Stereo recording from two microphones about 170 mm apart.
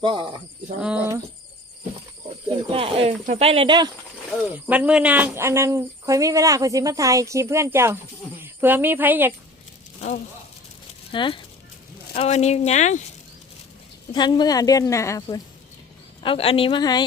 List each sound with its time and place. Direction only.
0.0 s speech: 30° right (ahead or behind)
0.8 s speech: 5° right (ahead or behind)
2.7 s speech: 35° right (ahead or behind)
4.5 s speech: 10° right (ahead or behind)
10.0 s speech: 40° left (ahead or behind)
11.1 s speech: 30° left (ahead or behind)
14.1 s a woman's voice: 25° left (ahead or behind)
16.2 s speech: 35° left (ahead or behind)